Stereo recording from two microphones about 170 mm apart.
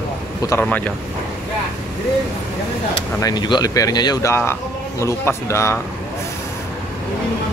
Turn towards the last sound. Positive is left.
turn(degrees=15)  # may be behind; listen again after turning